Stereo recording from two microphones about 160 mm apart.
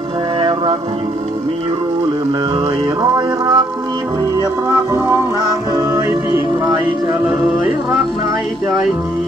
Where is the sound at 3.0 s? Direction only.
25° right (ahead or behind).